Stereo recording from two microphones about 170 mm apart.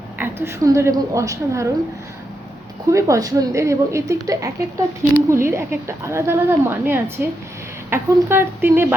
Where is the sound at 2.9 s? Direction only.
20° right (ahead or behind).